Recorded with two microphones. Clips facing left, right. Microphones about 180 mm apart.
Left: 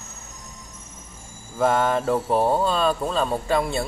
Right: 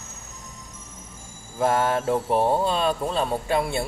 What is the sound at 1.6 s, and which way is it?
Speech, 5° right (ahead or behind).